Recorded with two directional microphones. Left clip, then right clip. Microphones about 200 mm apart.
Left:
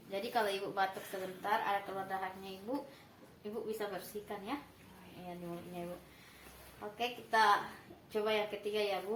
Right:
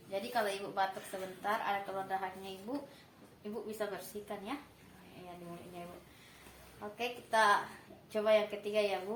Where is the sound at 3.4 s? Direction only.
25° right (ahead or behind).